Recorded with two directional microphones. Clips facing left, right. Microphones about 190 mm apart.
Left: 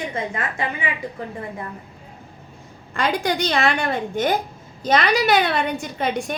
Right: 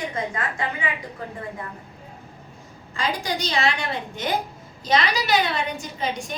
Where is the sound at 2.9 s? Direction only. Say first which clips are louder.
Left 5 dB; 60° left (ahead or behind).